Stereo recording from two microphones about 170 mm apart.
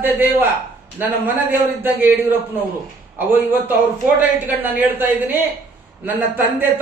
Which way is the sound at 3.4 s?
10° right (ahead or behind).